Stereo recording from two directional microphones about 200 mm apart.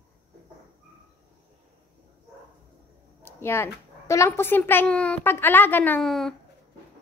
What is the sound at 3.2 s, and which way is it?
A child's voice, 10° left (ahead or behind).